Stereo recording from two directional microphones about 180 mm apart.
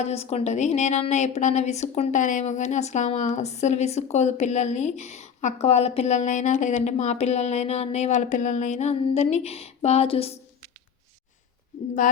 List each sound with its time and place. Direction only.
0.0 s a woman's voice: 35° left (ahead or behind)